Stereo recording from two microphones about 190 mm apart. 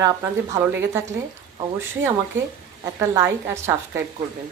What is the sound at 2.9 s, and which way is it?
A woman's voice, 10° right (ahead or behind).